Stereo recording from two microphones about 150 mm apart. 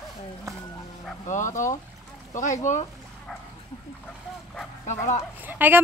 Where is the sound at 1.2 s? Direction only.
55° left (ahead or behind).